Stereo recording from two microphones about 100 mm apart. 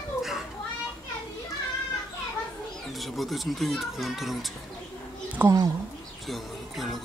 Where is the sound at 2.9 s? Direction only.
Centre (ahead or behind).